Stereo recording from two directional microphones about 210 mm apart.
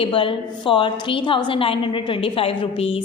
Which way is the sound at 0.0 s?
25° left (ahead or behind).